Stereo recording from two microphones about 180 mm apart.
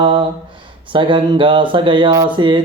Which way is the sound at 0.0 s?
30° right (ahead or behind).